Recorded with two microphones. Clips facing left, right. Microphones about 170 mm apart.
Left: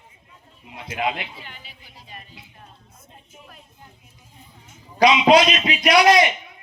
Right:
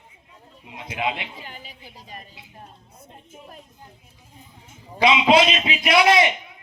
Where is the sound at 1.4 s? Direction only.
40° right (ahead or behind).